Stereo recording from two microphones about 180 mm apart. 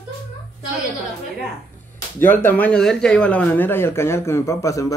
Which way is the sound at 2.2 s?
10° left (ahead or behind).